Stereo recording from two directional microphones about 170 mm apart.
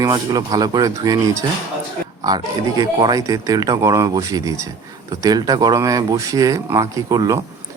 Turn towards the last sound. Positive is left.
turn(degrees=-20)  # may be behind; listen again after turning